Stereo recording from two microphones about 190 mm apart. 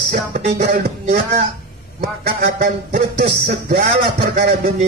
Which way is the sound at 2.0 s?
55° right (ahead or behind).